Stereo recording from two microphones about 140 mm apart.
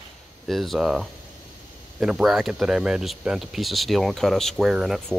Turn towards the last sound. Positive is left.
turn(degrees=0)  # may be behind; listen again after turning